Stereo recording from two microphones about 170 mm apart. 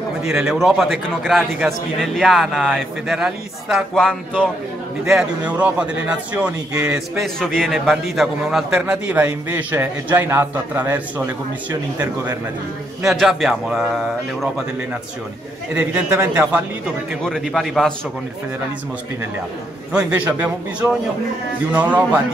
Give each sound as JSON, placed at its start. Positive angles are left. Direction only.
{"t": 0.2, "sound": "a man's voice", "side_deg": -5}
{"t": 13.0, "sound": "a man's voice", "side_deg": 0}
{"t": 15.7, "sound": "a man's voice", "side_deg": -10}
{"t": 17.2, "sound": "a man's voice", "side_deg": 0}
{"t": 19.9, "sound": "a man's voice", "side_deg": -5}